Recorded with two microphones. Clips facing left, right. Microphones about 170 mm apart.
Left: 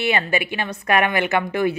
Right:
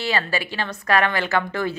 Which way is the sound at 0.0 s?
20° left (ahead or behind).